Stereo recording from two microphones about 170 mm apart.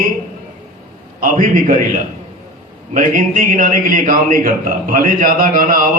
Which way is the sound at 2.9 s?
50° right (ahead or behind).